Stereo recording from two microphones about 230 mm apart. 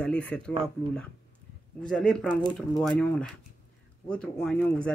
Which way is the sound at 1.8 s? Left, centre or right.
Centre.